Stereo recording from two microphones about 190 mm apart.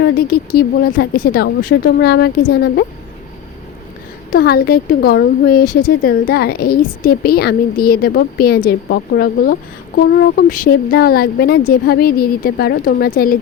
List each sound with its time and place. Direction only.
0.0 s speech: 55° left (ahead or behind)
4.3 s speech: 55° left (ahead or behind)